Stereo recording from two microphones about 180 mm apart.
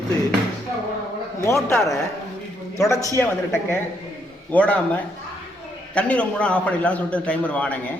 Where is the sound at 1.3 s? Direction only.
15° left (ahead or behind).